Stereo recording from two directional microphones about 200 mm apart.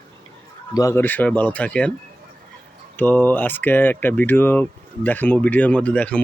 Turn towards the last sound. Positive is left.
turn(degrees=5)  # may be behind; listen again after turning